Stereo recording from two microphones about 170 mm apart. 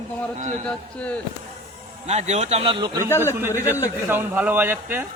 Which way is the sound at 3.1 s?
15° left (ahead or behind).